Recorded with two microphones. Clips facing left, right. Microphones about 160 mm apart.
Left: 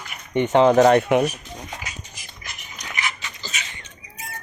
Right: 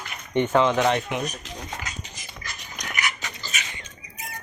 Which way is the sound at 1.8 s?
15° left (ahead or behind).